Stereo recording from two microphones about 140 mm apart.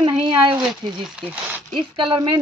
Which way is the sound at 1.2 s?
10° right (ahead or behind).